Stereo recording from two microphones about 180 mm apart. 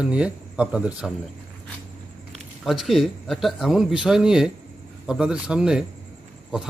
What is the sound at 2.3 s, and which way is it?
Speech, centre (ahead or behind).